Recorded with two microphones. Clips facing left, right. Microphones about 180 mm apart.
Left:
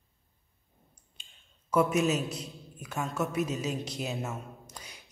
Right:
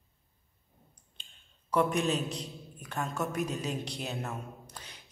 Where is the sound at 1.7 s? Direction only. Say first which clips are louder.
Left 2 dB; 5° left (ahead or behind).